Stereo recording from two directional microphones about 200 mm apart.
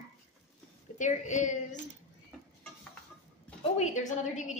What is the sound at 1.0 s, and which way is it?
Speech, 40° left (ahead or behind).